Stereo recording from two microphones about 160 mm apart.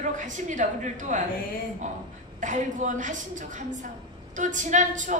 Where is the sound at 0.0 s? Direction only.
50° right (ahead or behind).